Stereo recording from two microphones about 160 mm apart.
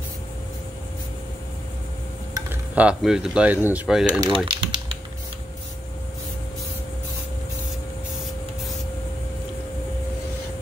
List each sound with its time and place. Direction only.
2.3 s speech: 10° right (ahead or behind)
4.5 s typing: 30° right (ahead or behind)